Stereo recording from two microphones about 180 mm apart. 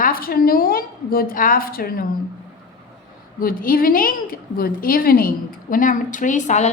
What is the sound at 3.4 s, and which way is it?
A woman's voice, 50° left (ahead or behind).